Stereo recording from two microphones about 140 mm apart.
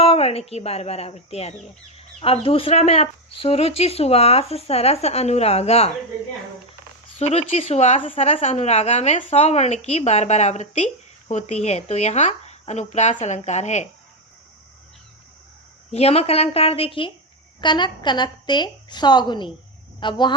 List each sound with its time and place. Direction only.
0.0 s speech: 45° left (ahead or behind)
7.2 s speech: 45° left (ahead or behind)
15.9 s a woman's voice: 50° left (ahead or behind)